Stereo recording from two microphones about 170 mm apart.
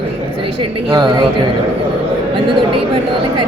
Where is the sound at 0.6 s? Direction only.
25° right (ahead or behind).